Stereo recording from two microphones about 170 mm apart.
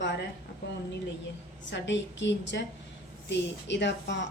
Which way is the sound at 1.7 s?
90° left.